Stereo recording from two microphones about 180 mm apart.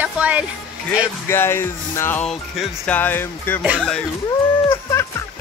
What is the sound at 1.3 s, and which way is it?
Speech, 15° left (ahead or behind).